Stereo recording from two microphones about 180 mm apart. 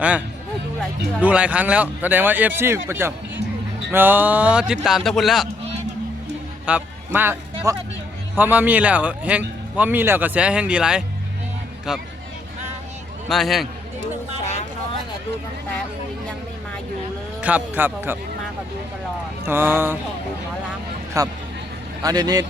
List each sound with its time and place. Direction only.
1.2 s a man's voice: 5° right (ahead or behind)
6.7 s a man's voice: 10° right (ahead or behind)
13.2 s a man's voice: centre (ahead or behind)
17.4 s speech: 10° right (ahead or behind)
19.5 s speech: 10° right (ahead or behind)
21.2 s speech: 20° right (ahead or behind)